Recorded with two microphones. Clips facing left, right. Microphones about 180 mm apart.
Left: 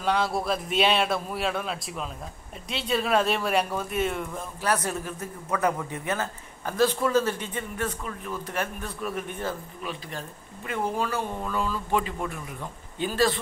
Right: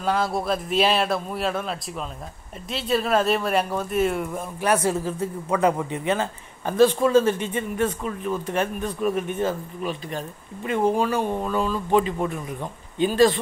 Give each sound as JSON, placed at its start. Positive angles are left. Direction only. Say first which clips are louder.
{"t": 0.0, "sound": "a man's voice", "louder": "right 2 dB", "side_deg": 0}
{"t": 4.4, "sound": "speech", "louder": "right 5 dB", "side_deg": -15}
{"t": 5.0, "sound": "a man's voice", "louder": "right 8 dB", "side_deg": -25}